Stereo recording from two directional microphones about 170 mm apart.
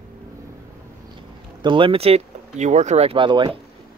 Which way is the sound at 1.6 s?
30° right (ahead or behind).